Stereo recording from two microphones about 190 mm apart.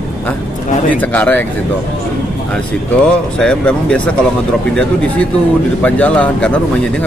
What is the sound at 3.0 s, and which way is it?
Speech, 5° left (ahead or behind).